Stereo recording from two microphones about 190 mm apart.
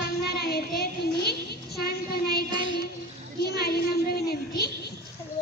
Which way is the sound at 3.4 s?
55° left (ahead or behind).